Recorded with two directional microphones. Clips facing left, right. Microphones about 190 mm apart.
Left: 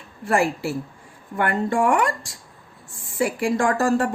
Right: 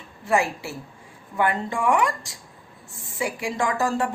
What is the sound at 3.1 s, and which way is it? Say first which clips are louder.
Speech: left 5 dB; 55° left (ahead or behind).